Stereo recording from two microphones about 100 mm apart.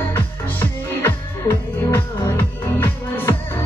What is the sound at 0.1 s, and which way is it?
Music, 20° left (ahead or behind).